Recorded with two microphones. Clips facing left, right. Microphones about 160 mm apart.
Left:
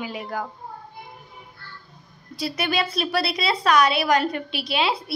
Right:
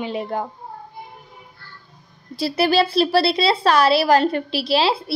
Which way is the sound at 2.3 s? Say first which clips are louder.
Right 7 dB; 30° right (ahead or behind).